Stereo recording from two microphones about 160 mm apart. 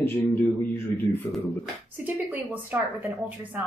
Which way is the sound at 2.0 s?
10° right (ahead or behind).